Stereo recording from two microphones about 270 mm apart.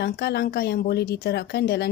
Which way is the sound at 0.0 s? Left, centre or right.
Left.